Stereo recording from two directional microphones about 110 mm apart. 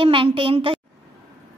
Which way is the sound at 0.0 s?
50° right (ahead or behind).